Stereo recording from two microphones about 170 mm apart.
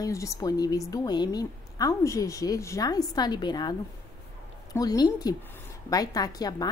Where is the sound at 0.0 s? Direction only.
20° left (ahead or behind).